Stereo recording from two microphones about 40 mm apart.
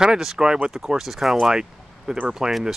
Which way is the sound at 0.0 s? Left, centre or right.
Centre.